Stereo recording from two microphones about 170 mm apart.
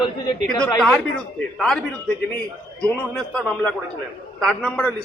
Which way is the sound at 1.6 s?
5° left (ahead or behind).